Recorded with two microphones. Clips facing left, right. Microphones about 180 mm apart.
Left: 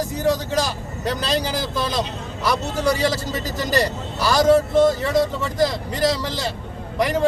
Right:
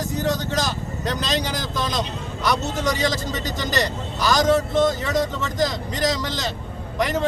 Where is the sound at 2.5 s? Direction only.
30° left (ahead or behind).